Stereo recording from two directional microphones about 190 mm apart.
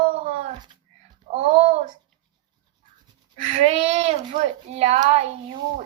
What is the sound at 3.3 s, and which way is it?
A child's voice, 35° right (ahead or behind).